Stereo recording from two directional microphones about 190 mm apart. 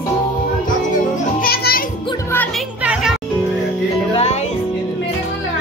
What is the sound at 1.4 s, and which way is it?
Music, 50° left (ahead or behind).